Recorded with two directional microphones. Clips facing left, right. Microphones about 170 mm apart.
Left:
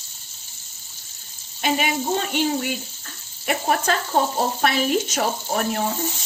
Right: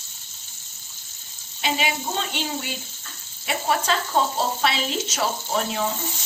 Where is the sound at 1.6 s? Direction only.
50° left (ahead or behind).